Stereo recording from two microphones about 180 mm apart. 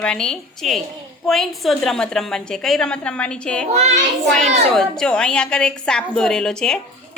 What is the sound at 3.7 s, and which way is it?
Speech, 35° right (ahead or behind).